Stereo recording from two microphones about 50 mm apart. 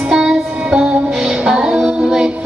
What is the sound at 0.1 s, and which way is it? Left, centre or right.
Music, centre.